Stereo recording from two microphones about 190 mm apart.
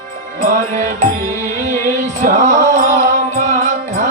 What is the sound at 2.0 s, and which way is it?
Music, 40° right (ahead or behind).